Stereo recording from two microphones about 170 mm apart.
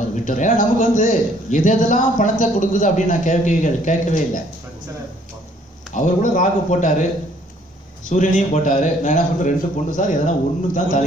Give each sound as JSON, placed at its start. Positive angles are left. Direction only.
{"t": 0.1, "sound": "a man's voice", "side_deg": 50}
{"t": 5.9, "sound": "a man's voice", "side_deg": 50}
{"t": 8.1, "sound": "a man's voice", "side_deg": 50}